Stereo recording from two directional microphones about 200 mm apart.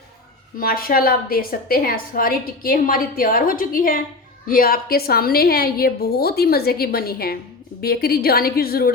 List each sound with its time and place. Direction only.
0.6 s a woman's voice: 45° left (ahead or behind)